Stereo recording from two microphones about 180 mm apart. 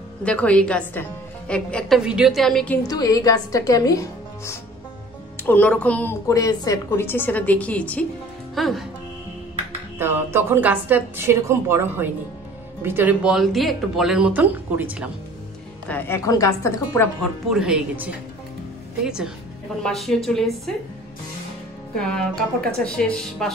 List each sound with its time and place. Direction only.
0.2 s a woman's voice: 5° left (ahead or behind)
2.8 s a woman's voice: 20° left (ahead or behind); by 8.8 s centre (ahead or behind)
9.9 s a woman's voice: 10° right (ahead or behind)
15.9 s a woman's voice: 10° left (ahead or behind)
17.2 s speech: 5° right (ahead or behind)
21.9 s speech: 5° left (ahead or behind)